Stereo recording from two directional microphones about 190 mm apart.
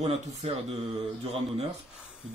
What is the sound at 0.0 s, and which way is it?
Speech, 35° right (ahead or behind).